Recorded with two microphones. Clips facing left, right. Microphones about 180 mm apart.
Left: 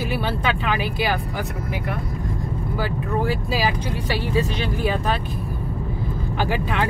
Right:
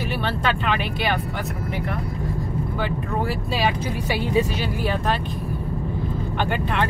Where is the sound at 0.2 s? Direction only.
5° left (ahead or behind).